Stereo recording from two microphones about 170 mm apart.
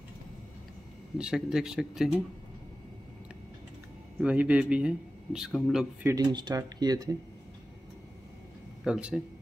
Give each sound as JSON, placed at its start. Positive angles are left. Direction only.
{"t": 1.1, "sound": "speech", "side_deg": -5}
{"t": 4.2, "sound": "speech", "side_deg": -10}
{"t": 6.0, "sound": "speech", "side_deg": -25}
{"t": 8.8, "sound": "speech", "side_deg": -5}